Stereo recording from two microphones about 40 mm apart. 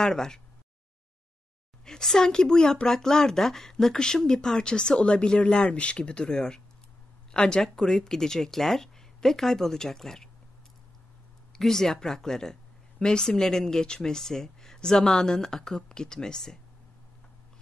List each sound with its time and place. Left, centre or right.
0.0 s speech: centre
1.9 s speech: centre
11.5 s speech: centre